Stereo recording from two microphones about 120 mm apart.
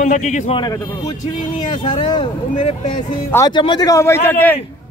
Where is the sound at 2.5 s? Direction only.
80° left.